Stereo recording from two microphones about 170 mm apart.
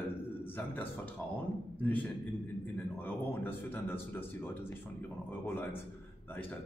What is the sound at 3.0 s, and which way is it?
A man's voice, 10° left (ahead or behind).